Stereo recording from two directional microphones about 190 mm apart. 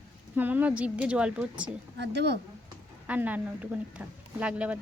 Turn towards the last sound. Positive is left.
turn(degrees=-5)  # may be behind; listen again after turning